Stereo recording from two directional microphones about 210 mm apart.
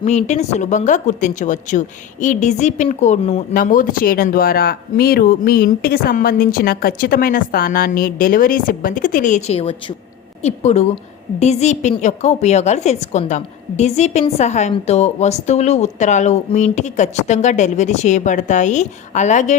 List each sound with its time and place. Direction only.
0.0 s a woman's voice: 35° left (ahead or behind)